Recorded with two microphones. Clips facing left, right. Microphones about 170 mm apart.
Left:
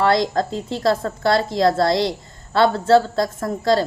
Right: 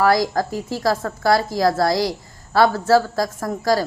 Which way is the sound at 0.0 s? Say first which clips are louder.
Even; 25° left (ahead or behind).